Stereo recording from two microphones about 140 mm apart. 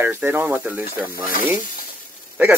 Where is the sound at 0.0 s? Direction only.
15° right (ahead or behind).